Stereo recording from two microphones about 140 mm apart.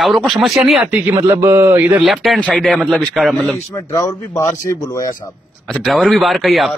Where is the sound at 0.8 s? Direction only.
15° right (ahead or behind).